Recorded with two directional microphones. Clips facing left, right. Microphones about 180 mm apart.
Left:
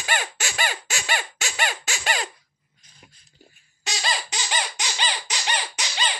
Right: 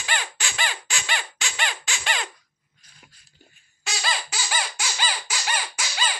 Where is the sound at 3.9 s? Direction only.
25° left (ahead or behind).